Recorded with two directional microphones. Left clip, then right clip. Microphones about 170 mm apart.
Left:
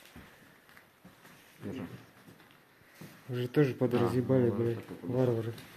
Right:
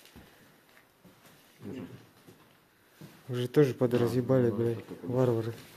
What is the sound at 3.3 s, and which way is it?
Speech, 30° right (ahead or behind).